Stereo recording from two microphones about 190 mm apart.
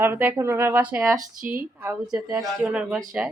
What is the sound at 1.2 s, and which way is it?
Speech, 45° right (ahead or behind).